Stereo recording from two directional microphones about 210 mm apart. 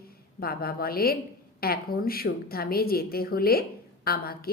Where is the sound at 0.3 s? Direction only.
45° left (ahead or behind).